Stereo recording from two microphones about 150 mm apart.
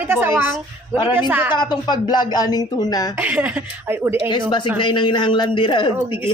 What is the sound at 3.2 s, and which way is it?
Speech, 10° right (ahead or behind).